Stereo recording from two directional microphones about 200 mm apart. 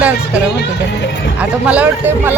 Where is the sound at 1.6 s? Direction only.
5° right (ahead or behind).